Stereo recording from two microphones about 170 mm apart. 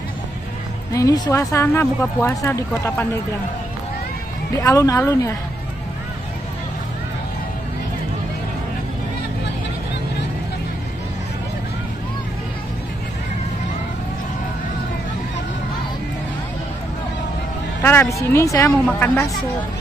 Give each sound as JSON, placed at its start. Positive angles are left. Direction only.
{"t": 0.9, "sound": "speech", "side_deg": 20}
{"t": 4.6, "sound": "speech", "side_deg": 20}
{"t": 17.8, "sound": "speech", "side_deg": 15}